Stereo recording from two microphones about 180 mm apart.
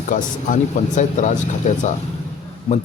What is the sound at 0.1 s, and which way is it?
Speech, 45° left (ahead or behind).